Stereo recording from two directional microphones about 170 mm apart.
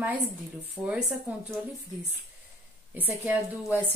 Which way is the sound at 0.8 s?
Centre (ahead or behind).